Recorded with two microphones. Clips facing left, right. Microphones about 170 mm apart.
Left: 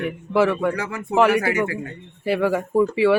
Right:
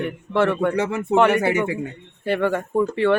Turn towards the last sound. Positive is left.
turn(degrees=5)  # may be behind; listen again after turning